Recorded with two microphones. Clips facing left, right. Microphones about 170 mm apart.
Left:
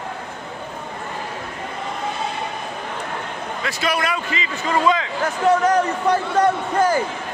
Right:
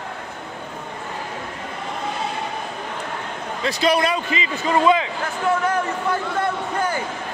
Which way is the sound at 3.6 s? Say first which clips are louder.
Right 5 dB; 30° right (ahead or behind).